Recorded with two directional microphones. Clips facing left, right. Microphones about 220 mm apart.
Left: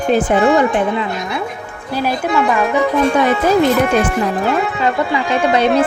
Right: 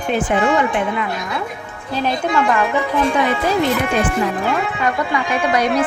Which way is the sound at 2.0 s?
5° left (ahead or behind).